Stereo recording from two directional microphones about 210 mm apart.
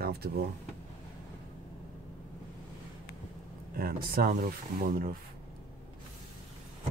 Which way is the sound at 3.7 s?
45° right (ahead or behind).